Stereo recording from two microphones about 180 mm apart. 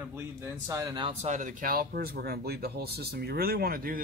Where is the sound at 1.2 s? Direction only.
45° right (ahead or behind).